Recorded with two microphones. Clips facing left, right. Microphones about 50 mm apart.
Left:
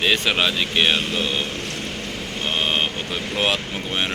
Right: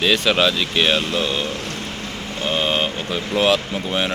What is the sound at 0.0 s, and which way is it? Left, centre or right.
Speech, centre.